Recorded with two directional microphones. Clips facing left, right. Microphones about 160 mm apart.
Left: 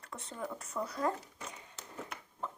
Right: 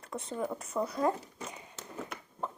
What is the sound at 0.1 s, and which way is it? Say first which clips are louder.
Speech: right 6 dB; 20° right (ahead or behind).